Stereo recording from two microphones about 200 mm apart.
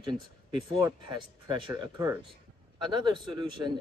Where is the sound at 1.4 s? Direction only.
20° right (ahead or behind).